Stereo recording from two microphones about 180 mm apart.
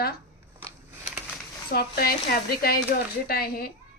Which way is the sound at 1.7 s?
60° left (ahead or behind).